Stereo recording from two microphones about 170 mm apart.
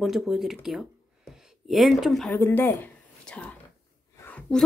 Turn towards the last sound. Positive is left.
turn(degrees=5)  # may be behind; listen again after turning